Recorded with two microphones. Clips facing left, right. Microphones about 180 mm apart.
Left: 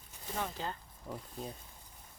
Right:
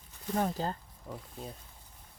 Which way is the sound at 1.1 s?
Centre (ahead or behind).